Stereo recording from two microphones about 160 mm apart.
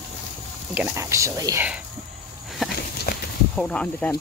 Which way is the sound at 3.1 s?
70° left (ahead or behind).